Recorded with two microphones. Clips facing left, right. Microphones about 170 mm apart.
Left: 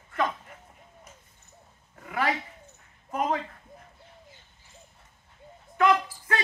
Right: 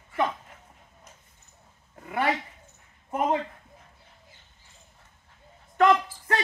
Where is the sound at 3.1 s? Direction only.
20° right (ahead or behind).